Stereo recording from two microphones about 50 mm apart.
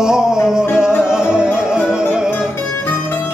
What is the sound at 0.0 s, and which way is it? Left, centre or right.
Music, centre.